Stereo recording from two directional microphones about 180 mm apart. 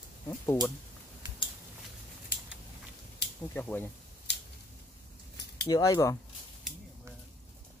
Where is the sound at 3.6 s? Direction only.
10° left (ahead or behind).